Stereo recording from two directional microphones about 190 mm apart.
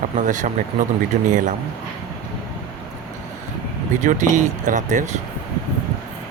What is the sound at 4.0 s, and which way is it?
Speech, 40° right (ahead or behind).